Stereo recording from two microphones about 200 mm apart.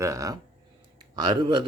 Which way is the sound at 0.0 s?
15° right (ahead or behind).